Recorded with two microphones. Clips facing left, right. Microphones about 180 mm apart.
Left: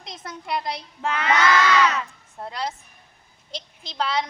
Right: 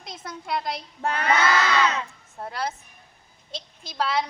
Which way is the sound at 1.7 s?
25° right (ahead or behind).